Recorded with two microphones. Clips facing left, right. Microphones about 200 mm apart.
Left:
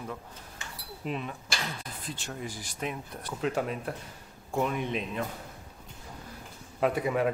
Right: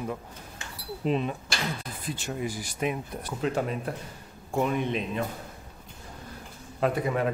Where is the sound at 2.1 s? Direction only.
5° right (ahead or behind).